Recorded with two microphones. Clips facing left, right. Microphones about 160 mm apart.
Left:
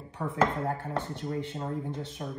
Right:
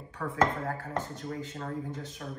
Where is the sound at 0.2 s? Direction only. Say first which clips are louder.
Left 1 dB; 25° left (ahead or behind).